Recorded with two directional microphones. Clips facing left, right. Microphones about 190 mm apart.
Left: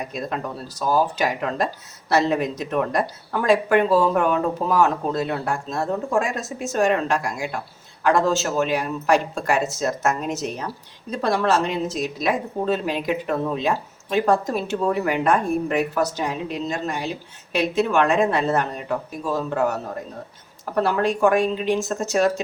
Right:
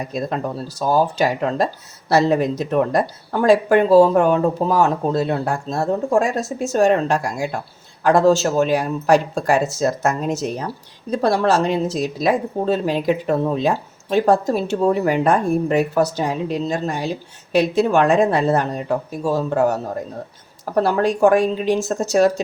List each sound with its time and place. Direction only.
0.0 s speech: 35° right (ahead or behind)
20.8 s speech: 35° right (ahead or behind)